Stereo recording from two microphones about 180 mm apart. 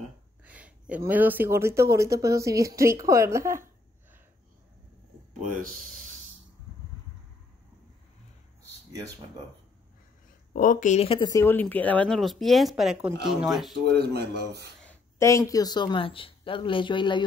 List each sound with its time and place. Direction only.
0.5 s speech: 5° right (ahead or behind)
5.4 s speech: 50° right (ahead or behind)
10.5 s speech: 50° left (ahead or behind); by 11.4 s 25° left (ahead or behind)
11.4 s speech: 10° left (ahead or behind)
13.9 s speech: 60° right (ahead or behind)
14.8 s speech: 10° left (ahead or behind); by 17.2 s 25° left (ahead or behind)